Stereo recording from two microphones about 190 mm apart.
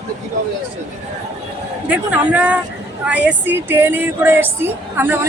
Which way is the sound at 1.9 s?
5° right (ahead or behind).